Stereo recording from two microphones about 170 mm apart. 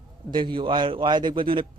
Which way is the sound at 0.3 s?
30° right (ahead or behind).